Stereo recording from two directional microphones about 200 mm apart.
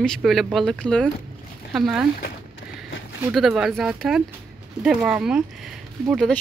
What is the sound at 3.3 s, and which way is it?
Speech, 5° right (ahead or behind).